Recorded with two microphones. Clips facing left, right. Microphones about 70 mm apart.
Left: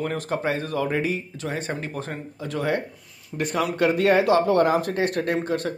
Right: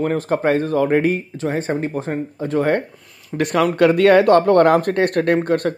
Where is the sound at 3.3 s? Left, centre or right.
Right.